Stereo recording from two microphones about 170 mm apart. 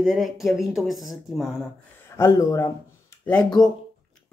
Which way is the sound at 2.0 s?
15° left (ahead or behind).